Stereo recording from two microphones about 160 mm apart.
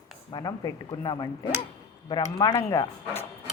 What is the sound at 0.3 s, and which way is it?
Speech, 25° left (ahead or behind).